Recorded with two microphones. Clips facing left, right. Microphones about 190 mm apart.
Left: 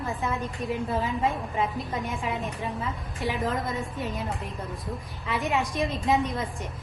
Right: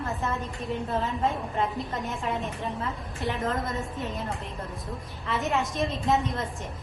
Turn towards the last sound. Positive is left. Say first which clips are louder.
# left 1 dB
turn(degrees=0)  # may be behind; listen again after turning